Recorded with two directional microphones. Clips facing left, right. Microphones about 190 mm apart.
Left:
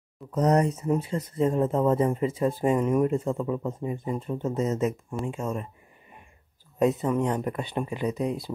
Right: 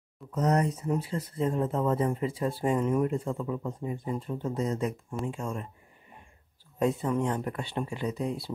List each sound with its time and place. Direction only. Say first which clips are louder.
0.3 s speech: left 4 dB; 35° left (ahead or behind)
0.8 s speech: left 4 dB; 20° left (ahead or behind)
6.8 s speech: left 4 dB; 20° left (ahead or behind)